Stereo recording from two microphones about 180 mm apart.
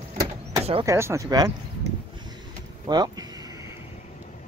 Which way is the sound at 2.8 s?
25° right (ahead or behind).